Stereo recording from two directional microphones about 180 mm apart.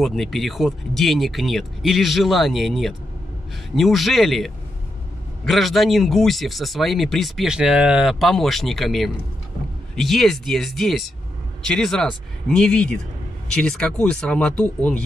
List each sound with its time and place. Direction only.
0.0 s a man's voice: centre (ahead or behind)